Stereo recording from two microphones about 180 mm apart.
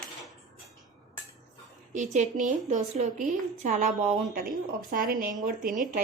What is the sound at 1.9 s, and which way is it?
A woman's voice, 40° right (ahead or behind).